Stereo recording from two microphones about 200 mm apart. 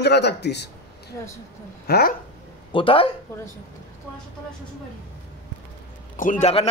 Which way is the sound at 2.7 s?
25° left (ahead or behind).